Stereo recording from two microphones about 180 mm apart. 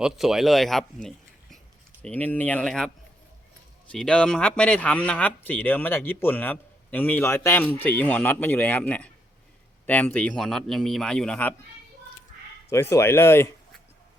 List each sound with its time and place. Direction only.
0.0 s a man's voice: centre (ahead or behind)
12.7 s a man's voice: 15° left (ahead or behind)